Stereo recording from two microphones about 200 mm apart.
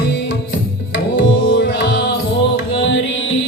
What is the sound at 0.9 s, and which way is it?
Music, 65° left (ahead or behind).